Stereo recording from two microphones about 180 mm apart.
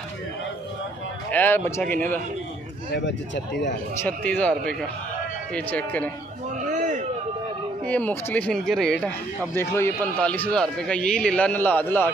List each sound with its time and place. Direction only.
1.3 s speech: 10° left (ahead or behind)
2.9 s speech: 80° left
4.0 s speech: 10° left (ahead or behind)
6.6 s a sound: 45° right (ahead or behind)
7.8 s a man's voice: 10° left (ahead or behind)